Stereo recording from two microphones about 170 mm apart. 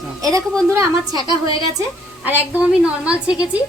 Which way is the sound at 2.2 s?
10° right (ahead or behind).